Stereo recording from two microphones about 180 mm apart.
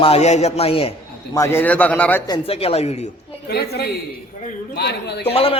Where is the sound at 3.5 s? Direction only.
65° left (ahead or behind).